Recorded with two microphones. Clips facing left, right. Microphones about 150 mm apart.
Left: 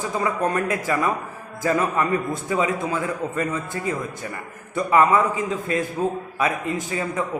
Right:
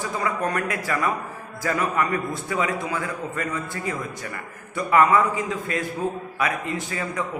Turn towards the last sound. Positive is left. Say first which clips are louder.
# left 3 dB
turn(degrees=20)  # may be behind; listen again after turning